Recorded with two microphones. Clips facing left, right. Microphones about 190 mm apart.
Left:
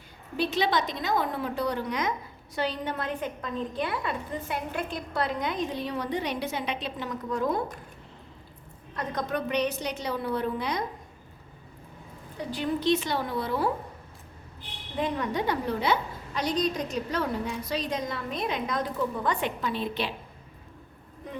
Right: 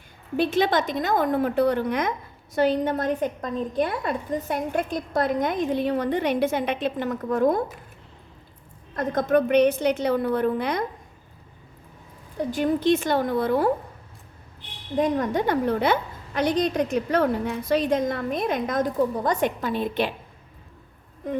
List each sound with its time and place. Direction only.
0.3 s a woman's voice: 50° right (ahead or behind)
9.0 s a woman's voice: 50° right (ahead or behind)
12.5 s a woman's voice: 45° right (ahead or behind)
14.9 s a woman's voice: 45° right (ahead or behind)